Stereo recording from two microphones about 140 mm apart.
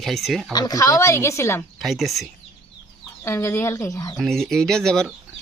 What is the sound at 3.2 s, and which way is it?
Speech, 20° left (ahead or behind).